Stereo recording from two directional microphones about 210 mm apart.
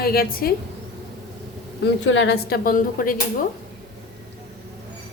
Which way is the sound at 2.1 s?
55° left (ahead or behind).